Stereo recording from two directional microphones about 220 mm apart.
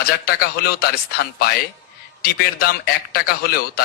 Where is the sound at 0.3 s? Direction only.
45° left (ahead or behind).